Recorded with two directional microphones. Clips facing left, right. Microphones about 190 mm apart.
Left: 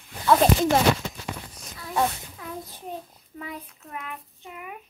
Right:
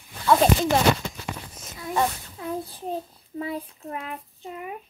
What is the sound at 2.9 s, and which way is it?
Child singing, 30° right (ahead or behind).